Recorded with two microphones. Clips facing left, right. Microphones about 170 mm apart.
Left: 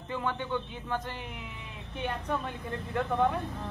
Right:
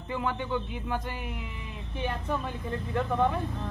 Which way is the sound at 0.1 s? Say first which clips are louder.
Right 2 dB; 10° right (ahead or behind).